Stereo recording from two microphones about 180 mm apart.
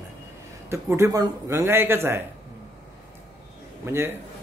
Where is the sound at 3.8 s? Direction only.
15° right (ahead or behind).